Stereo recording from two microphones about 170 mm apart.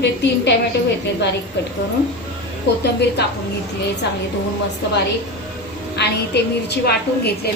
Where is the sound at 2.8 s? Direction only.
80° left.